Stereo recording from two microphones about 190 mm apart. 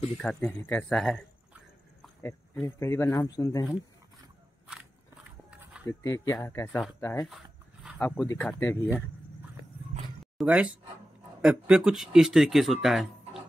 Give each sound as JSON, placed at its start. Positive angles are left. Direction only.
{"t": 0.2, "sound": "speech", "side_deg": 5}
{"t": 2.6, "sound": "speech", "side_deg": 15}
{"t": 5.9, "sound": "speech", "side_deg": 15}
{"t": 10.3, "sound": "speech", "side_deg": -5}